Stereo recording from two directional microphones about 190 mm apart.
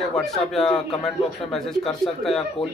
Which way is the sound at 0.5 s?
5° left (ahead or behind).